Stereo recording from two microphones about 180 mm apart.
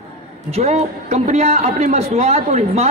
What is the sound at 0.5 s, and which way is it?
A man's voice, 35° right (ahead or behind).